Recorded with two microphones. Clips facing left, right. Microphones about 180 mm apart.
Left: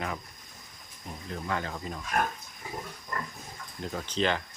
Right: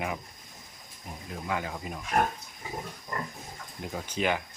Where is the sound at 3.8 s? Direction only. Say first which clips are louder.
Left 2 dB; 10° right (ahead or behind).